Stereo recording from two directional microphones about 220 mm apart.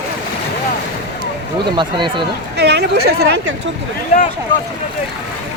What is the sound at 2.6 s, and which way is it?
Speech, 50° right (ahead or behind).